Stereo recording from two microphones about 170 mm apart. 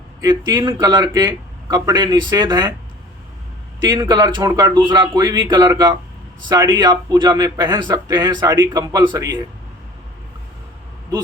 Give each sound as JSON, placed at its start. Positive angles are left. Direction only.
{"t": 0.2, "sound": "a man's voice", "side_deg": -25}
{"t": 3.8, "sound": "a man's voice", "side_deg": -25}